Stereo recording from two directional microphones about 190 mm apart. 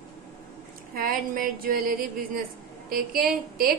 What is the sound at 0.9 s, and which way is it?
Speech, 50° right (ahead or behind).